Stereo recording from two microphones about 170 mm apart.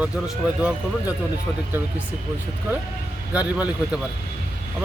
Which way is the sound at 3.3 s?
10° right (ahead or behind).